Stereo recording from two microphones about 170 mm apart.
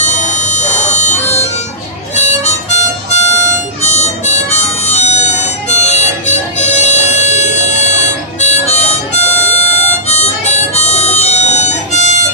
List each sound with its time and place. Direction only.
0.0 s music: 45° left (ahead or behind)
2.1 s harmonica: 40° left (ahead or behind)